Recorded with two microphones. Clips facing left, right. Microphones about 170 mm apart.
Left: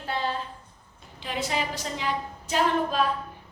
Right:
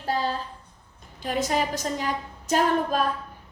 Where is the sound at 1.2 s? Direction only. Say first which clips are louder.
Right 4 dB; 45° right (ahead or behind).